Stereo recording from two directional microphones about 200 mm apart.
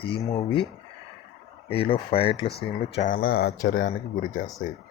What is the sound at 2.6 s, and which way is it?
A man's voice, 40° left (ahead or behind).